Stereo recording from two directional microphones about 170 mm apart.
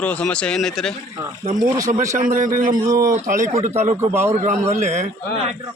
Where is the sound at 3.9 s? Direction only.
15° right (ahead or behind).